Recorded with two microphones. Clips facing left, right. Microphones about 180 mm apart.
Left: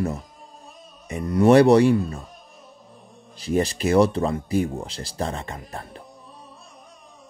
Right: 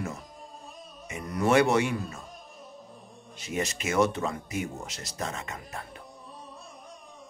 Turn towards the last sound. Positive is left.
turn(degrees=30)  # may be behind; listen again after turning